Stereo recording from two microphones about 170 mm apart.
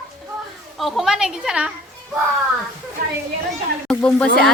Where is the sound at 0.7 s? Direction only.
Centre (ahead or behind).